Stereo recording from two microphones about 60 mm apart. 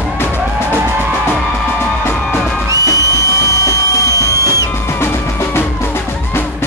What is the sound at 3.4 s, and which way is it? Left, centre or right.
Music, left.